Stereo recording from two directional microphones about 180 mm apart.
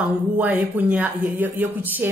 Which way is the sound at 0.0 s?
10° right (ahead or behind).